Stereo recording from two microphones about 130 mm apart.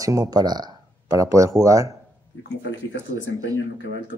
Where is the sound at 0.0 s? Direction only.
25° right (ahead or behind).